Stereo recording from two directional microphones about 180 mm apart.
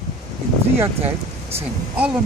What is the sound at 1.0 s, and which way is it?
Speech, 35° right (ahead or behind).